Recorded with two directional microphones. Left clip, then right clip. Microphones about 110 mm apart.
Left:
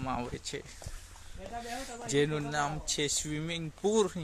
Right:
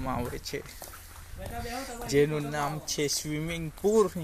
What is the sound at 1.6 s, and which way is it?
Speech, 10° left (ahead or behind).